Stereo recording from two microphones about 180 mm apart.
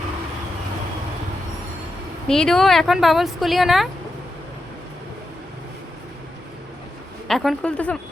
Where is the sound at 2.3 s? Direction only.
5° left (ahead or behind).